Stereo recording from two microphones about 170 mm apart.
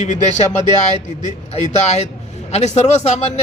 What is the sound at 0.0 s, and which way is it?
Speech, 45° left (ahead or behind).